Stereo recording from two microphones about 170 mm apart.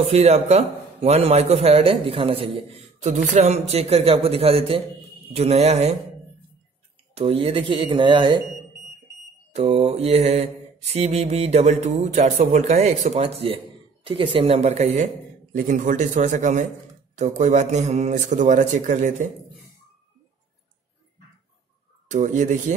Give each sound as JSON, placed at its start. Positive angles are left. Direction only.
{"t": 0.1, "sound": "a man's voice", "side_deg": -40}
{"t": 7.2, "sound": "a man's voice", "side_deg": -35}
{"t": 9.5, "sound": "a man's voice", "side_deg": -40}
{"t": 15.5, "sound": "a man's voice", "side_deg": -50}
{"t": 22.0, "sound": "a man's voice", "side_deg": -45}